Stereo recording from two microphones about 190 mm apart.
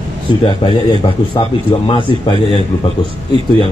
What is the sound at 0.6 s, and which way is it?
A man's voice, 25° left (ahead or behind).